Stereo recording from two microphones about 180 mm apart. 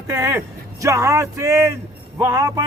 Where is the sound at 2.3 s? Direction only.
20° right (ahead or behind).